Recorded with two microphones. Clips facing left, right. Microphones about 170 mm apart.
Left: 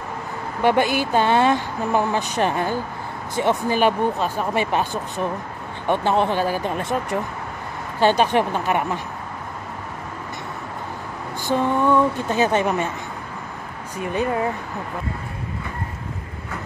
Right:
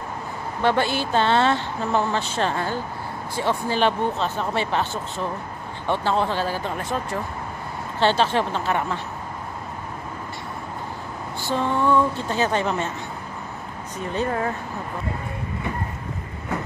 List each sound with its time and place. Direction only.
0.6 s speech: 15° left (ahead or behind)
11.4 s speech: 15° left (ahead or behind)
13.9 s speech: 10° left (ahead or behind)